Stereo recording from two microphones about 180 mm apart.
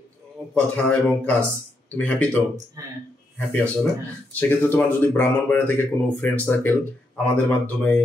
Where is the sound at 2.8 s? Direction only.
20° right (ahead or behind).